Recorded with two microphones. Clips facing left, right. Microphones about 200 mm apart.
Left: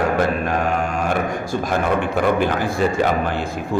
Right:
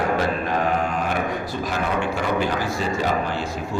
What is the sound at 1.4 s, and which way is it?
A man's voice, 50° left (ahead or behind).